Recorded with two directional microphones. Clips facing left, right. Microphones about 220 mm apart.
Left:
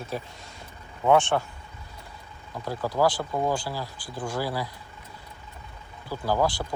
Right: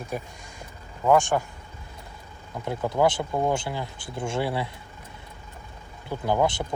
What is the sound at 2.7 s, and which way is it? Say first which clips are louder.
Speech: right 1 dB; 20° right (ahead or behind).